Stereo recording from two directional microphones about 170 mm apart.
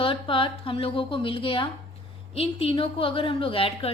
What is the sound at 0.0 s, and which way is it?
A woman's voice, 30° left (ahead or behind).